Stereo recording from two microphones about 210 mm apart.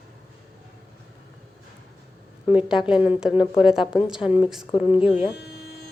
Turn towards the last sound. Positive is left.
turn(degrees=-5)  # may be behind; listen again after turning